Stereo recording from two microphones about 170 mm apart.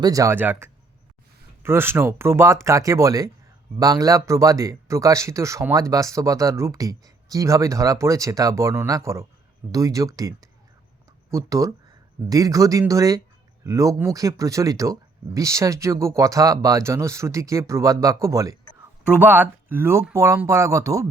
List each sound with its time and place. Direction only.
0.0 s speech: 20° right (ahead or behind)